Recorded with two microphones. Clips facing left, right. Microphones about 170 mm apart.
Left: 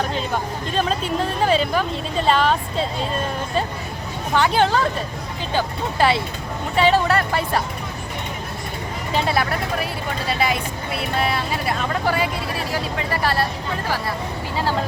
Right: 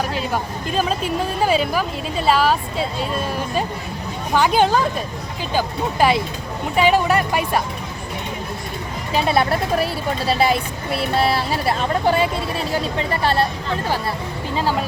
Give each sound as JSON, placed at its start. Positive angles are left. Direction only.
{"t": 0.7, "sound": "speech", "side_deg": -5}
{"t": 4.4, "sound": "speech", "side_deg": -15}
{"t": 9.1, "sound": "speech", "side_deg": -20}